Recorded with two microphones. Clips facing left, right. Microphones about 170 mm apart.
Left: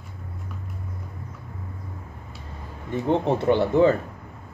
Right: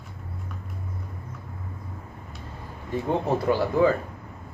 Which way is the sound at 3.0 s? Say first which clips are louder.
Left 3 dB; 25° left (ahead or behind).